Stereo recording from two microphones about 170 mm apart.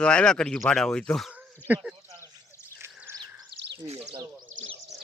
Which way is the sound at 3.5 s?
80° right.